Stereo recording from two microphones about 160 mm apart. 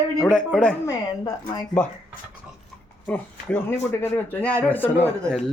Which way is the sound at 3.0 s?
10° left (ahead or behind).